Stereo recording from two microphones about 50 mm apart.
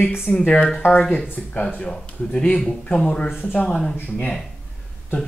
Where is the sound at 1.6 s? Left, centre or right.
Centre.